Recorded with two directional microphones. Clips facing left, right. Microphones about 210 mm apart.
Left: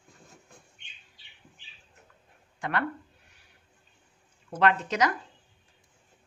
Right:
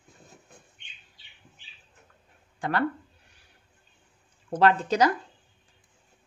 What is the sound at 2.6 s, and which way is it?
Speech, 35° right (ahead or behind).